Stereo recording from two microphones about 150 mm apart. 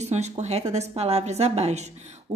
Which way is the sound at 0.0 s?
50° right (ahead or behind).